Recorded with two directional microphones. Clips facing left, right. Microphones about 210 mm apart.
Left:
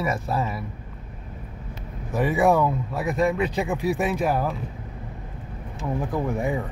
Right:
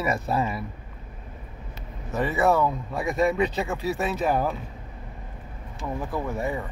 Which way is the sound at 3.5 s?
15° left (ahead or behind).